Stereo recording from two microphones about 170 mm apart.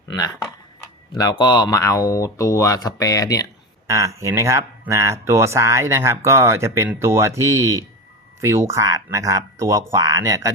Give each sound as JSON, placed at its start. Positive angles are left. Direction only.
{"t": 1.1, "sound": "speech", "side_deg": 25}
{"t": 3.8, "sound": "speech", "side_deg": -20}